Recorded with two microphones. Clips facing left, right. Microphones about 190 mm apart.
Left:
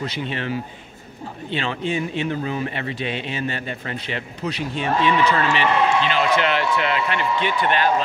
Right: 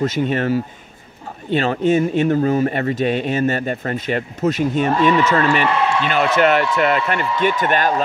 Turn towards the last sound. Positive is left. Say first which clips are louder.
# right 3 dB
turn(degrees=-45)  # may be behind; listen again after turning